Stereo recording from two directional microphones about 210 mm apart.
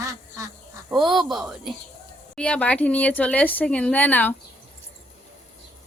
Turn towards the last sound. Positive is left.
turn(degrees=10)  # may be behind; listen again after turning